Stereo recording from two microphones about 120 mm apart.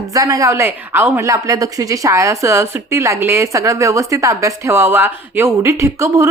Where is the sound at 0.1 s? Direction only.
30° right (ahead or behind).